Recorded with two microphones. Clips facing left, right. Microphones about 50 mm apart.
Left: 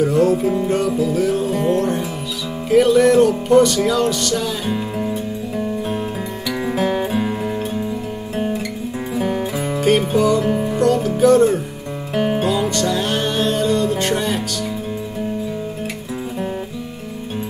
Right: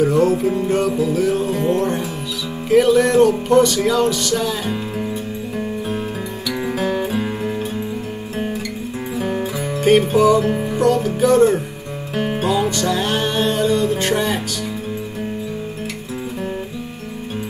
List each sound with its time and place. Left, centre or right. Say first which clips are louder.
0.0 s music: even; centre
6.7 s music: left 2 dB; centre
7.2 s music: left 1 dB; centre
9.8 s music: right 3 dB; centre